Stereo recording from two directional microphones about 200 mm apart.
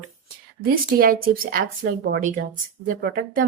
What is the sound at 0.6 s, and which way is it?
Speech, 50° right (ahead or behind).